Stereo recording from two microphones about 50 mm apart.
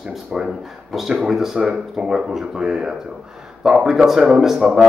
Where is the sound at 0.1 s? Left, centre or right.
Centre.